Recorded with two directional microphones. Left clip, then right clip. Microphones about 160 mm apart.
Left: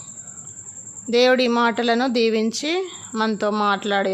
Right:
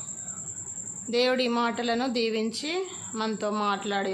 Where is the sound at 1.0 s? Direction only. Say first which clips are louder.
Left 8 dB; 45° left (ahead or behind).